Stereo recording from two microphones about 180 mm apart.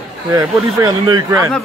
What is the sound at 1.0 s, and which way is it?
Speech, 20° right (ahead or behind).